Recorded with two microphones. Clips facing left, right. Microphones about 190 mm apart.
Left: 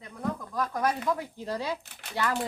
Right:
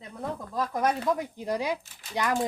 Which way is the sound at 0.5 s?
20° right (ahead or behind).